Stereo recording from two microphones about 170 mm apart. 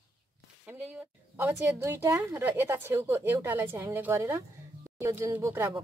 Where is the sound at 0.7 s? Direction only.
10° right (ahead or behind).